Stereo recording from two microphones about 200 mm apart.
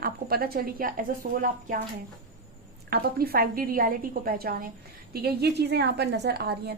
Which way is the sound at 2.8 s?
50° right (ahead or behind).